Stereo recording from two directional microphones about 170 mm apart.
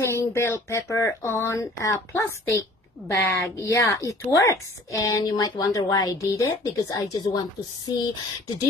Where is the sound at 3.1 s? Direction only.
20° left (ahead or behind).